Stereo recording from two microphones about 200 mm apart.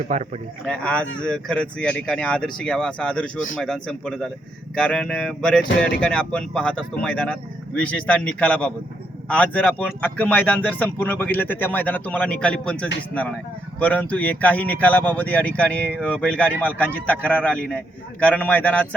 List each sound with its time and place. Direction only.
0.1 s speech: 35° right (ahead or behind)
0.6 s speech: 5° left (ahead or behind)